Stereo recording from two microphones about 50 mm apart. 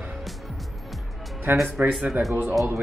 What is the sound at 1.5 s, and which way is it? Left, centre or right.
Speech, right.